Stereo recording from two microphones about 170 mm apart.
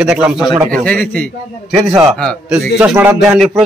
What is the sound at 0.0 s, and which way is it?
Speech, 5° right (ahead or behind).